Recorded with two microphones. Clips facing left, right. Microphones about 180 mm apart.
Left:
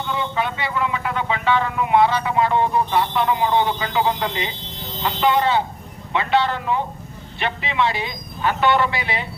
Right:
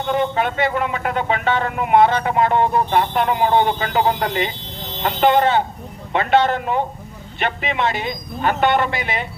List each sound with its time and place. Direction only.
0.1 s speech: 50° right (ahead or behind)